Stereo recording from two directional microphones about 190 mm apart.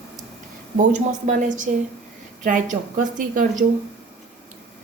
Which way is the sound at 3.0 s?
40° right (ahead or behind).